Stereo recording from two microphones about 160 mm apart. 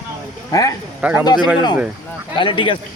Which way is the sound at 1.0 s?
10° right (ahead or behind).